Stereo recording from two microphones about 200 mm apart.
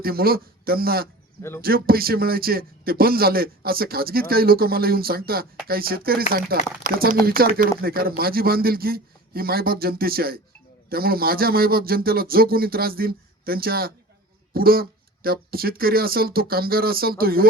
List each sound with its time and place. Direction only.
0.0 s a man's voice: 50° right (ahead or behind)
1.4 s speech: 15° left (ahead or behind)
1.6 s a man's voice: 50° right (ahead or behind)